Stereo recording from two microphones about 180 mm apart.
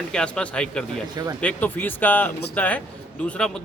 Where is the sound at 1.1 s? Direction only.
20° right (ahead or behind).